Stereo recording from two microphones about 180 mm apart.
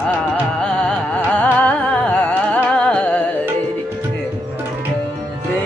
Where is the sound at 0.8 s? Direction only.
5° left (ahead or behind).